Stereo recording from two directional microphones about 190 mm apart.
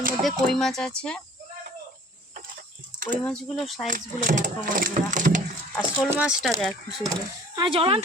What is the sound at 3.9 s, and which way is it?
Speech, 45° right (ahead or behind).